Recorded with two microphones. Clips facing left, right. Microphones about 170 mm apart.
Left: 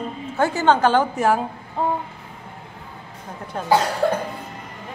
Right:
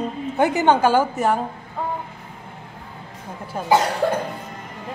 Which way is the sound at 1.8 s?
30° left (ahead or behind).